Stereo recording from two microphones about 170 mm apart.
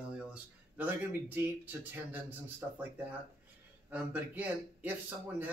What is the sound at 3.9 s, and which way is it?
Speech, 10° right (ahead or behind).